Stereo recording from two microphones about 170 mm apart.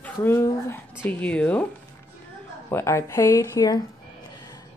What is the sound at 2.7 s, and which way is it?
Speech, 15° left (ahead or behind).